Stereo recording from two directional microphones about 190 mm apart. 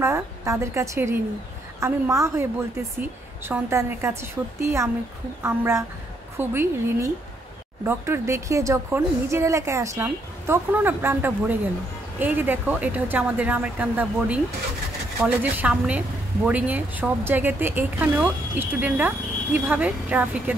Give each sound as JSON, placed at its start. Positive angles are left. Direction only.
{"t": 0.0, "sound": "speech", "side_deg": -15}